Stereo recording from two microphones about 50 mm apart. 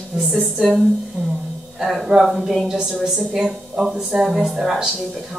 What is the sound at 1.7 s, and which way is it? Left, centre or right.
A woman's voice, centre.